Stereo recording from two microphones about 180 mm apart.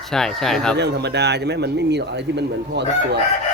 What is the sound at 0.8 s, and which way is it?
Speech, 70° right (ahead or behind).